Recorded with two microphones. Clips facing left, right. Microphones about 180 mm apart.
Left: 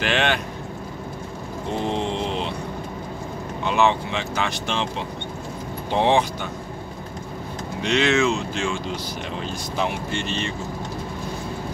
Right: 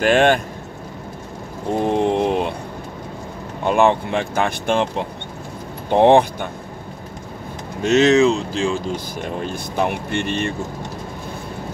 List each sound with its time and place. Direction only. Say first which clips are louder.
0.0 s speech: right 8 dB; 45° right (ahead or behind)
1.9 s a sound: right 9 dB; 55° right (ahead or behind)
3.6 s speech: right 5 dB; 50° right (ahead or behind)
7.8 s speech: right 7 dB; 40° right (ahead or behind)